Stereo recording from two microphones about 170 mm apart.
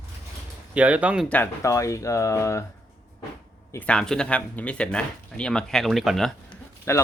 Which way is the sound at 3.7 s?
10° left (ahead or behind).